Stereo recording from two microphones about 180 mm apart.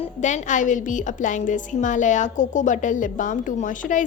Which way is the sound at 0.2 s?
40° left (ahead or behind).